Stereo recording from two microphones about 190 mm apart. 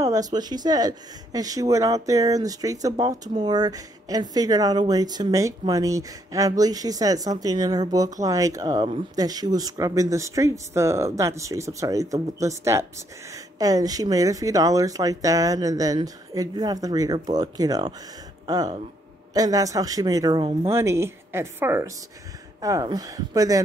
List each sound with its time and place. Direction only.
0.0 s speech: 20° right (ahead or behind)
19.3 s speech: 20° right (ahead or behind)